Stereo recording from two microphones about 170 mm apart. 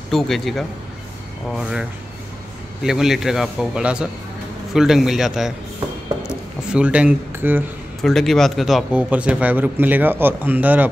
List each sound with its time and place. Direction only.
0.1 s speech: centre (ahead or behind)
8.0 s a man's voice: centre (ahead or behind)